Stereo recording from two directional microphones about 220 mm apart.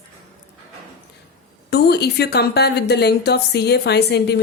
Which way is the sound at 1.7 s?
45° left (ahead or behind).